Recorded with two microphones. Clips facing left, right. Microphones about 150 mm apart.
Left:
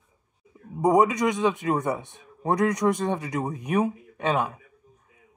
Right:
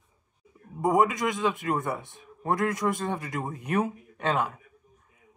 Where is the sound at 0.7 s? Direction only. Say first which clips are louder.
Left 3 dB; 20° left (ahead or behind).